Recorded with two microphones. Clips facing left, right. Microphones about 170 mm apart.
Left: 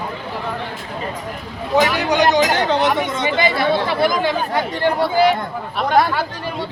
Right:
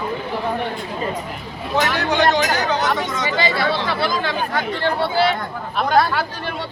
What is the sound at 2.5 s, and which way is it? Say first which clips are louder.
Speech: left 3 dB; 25° left (ahead or behind).